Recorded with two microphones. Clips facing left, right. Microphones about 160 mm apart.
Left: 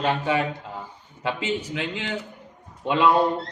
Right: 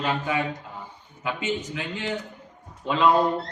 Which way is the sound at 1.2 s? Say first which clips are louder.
Left 2 dB; 30° left (ahead or behind).